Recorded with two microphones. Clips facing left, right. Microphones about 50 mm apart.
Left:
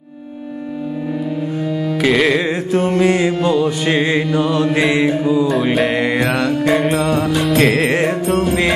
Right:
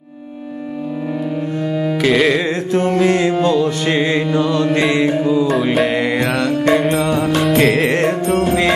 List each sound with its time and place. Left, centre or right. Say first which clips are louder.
1.7 s carnatic music: right 3 dB; centre
2.0 s music: even; centre